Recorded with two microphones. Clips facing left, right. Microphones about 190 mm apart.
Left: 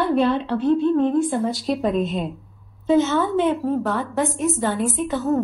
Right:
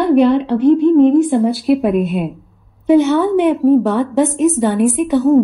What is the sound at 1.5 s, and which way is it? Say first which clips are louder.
A woman's voice: right 8 dB; 5° right (ahead or behind).